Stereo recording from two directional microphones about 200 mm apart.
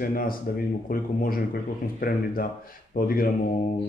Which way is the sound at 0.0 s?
45° left (ahead or behind).